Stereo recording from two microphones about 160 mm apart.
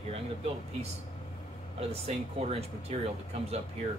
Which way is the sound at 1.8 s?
40° right (ahead or behind).